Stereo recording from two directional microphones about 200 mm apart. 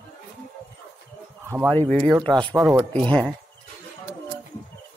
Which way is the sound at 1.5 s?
15° right (ahead or behind).